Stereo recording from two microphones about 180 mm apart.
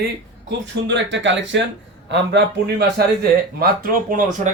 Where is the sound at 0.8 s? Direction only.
85° right.